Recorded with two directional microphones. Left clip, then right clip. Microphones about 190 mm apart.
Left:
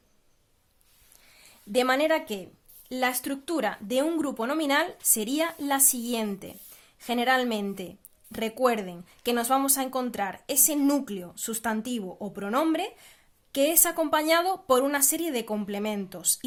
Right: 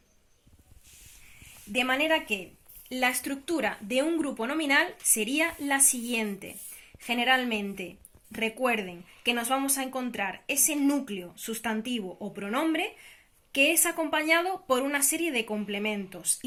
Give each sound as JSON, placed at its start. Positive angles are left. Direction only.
{"t": 1.7, "sound": "a woman's voice", "side_deg": 55}
{"t": 2.9, "sound": "a woman's voice", "side_deg": 40}